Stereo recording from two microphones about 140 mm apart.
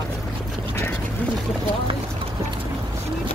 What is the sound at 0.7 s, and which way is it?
Speech, 15° left (ahead or behind).